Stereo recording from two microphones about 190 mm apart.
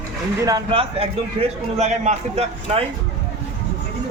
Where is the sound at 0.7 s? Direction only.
30° right (ahead or behind).